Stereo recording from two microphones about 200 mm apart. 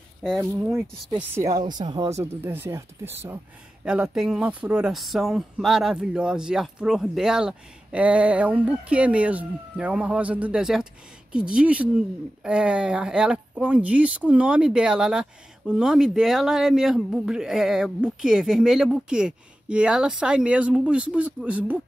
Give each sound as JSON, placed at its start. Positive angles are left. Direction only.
{"t": 0.7, "sound": "speech", "side_deg": 0}
{"t": 1.3, "sound": "speech", "side_deg": -15}